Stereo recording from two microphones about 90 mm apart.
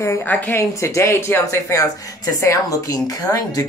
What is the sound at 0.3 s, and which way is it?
Speech, 20° left (ahead or behind).